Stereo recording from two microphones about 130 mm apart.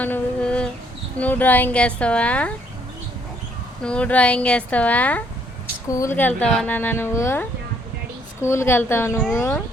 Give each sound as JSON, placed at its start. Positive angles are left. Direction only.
{"t": 0.0, "sound": "a sound", "side_deg": 10}
{"t": 1.2, "sound": "speech", "side_deg": 15}
{"t": 3.8, "sound": "speech", "side_deg": 10}